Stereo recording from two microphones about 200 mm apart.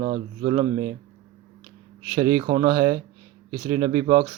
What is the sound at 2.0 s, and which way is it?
Speech, 20° right (ahead or behind).